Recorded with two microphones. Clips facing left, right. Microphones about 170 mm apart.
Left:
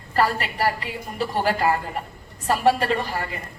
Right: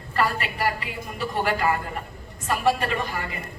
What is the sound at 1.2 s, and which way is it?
A man's voice, 35° left (ahead or behind).